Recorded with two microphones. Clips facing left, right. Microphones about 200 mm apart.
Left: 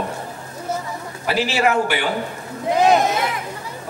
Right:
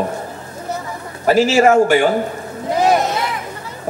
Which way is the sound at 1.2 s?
45° right (ahead or behind).